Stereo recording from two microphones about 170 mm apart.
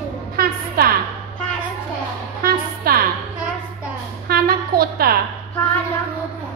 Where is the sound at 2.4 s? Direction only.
60° right (ahead or behind).